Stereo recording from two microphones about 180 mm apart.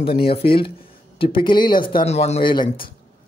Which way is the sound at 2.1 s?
35° left (ahead or behind).